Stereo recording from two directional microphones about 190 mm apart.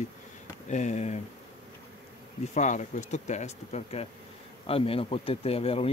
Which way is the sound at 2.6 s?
40° left (ahead or behind).